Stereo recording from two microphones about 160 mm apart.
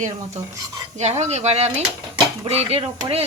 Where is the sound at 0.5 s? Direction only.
25° right (ahead or behind).